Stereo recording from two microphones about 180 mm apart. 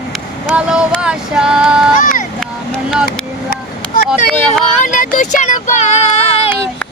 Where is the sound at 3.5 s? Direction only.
50° left (ahead or behind).